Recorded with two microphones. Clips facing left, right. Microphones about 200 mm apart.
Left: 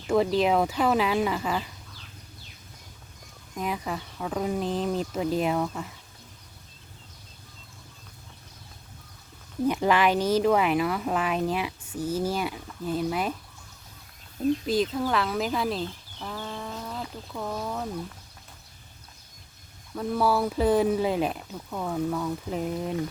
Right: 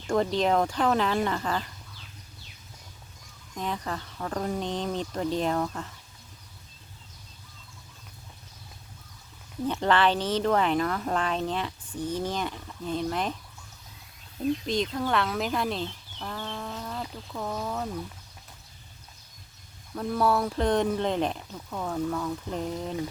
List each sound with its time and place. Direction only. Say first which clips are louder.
0.3 s speech: left 1 dB; 5° left (ahead or behind)
3.5 s speech: left 2 dB; 10° left (ahead or behind)
9.6 s speech: left 1 dB; 10° left (ahead or behind)
14.7 s speech: left 2 dB; 5° left (ahead or behind)
20.0 s speech: left 1 dB; centre (ahead or behind)